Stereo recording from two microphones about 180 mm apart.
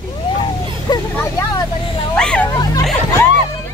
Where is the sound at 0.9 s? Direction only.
20° left (ahead or behind).